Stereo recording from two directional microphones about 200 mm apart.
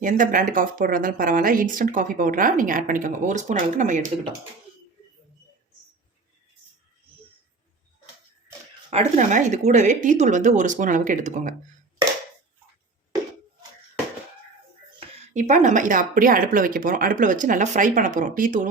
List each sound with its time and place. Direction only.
0.0 s speech: 40° right (ahead or behind)
8.9 s speech: 35° right (ahead or behind)
15.3 s speech: 40° right (ahead or behind)